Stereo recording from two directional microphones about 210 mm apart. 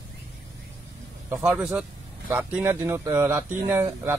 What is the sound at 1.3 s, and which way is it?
Speech, 10° right (ahead or behind).